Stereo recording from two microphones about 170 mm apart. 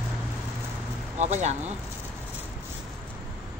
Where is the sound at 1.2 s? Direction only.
40° right (ahead or behind).